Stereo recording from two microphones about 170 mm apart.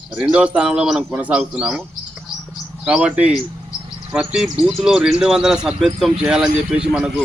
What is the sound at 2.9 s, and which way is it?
Speech, 5° right (ahead or behind).